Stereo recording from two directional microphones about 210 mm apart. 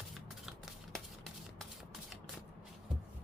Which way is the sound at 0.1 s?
Centre (ahead or behind).